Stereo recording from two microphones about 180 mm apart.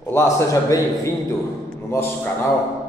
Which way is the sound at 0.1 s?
15° left (ahead or behind).